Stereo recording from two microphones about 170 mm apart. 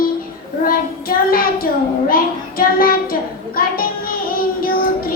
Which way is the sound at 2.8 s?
60° left (ahead or behind).